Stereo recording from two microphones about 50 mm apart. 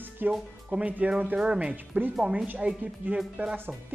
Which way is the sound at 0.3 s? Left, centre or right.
Centre.